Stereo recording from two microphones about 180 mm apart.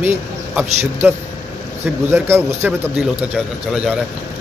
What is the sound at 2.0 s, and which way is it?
A man's voice, 15° right (ahead or behind).